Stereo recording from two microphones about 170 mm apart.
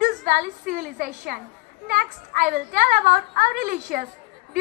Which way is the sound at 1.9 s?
50° right (ahead or behind).